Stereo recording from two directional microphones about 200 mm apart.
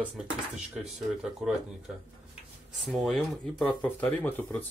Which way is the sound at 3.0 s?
Centre (ahead or behind).